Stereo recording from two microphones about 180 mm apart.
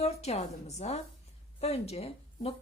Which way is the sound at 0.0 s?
35° left (ahead or behind).